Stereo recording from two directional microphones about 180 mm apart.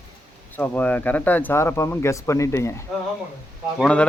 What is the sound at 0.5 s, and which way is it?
Speech, 10° left (ahead or behind).